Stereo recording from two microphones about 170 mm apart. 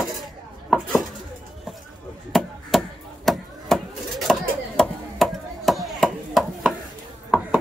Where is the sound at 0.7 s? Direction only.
Centre (ahead or behind).